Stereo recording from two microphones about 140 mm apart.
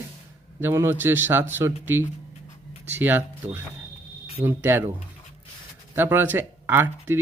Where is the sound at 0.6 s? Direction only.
15° right (ahead or behind).